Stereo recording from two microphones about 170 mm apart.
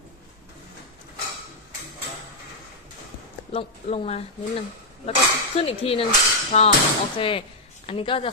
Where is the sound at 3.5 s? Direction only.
30° left (ahead or behind).